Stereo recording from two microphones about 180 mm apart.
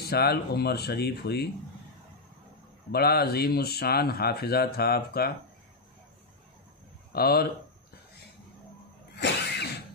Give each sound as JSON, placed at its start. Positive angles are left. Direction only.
{"t": 0.0, "sound": "speech", "side_deg": 60}
{"t": 2.9, "sound": "speech", "side_deg": 60}
{"t": 7.1, "sound": "speech", "side_deg": 60}
{"t": 9.1, "sound": "a sound", "side_deg": 70}